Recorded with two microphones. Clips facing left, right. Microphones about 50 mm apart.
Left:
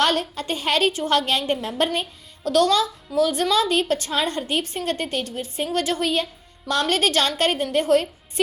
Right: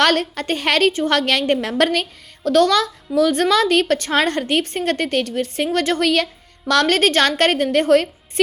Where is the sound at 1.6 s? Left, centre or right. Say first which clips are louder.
Right 5 dB; right.